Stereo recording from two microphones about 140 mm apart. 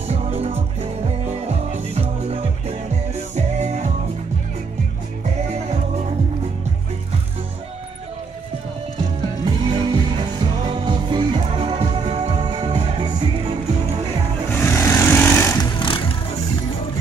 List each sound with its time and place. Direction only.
0.1 s music: 45° right (ahead or behind)
9.4 s music: 35° right (ahead or behind)
14.5 s jackhammer: 15° left (ahead or behind)
15.6 s vehicle: 35° left (ahead or behind)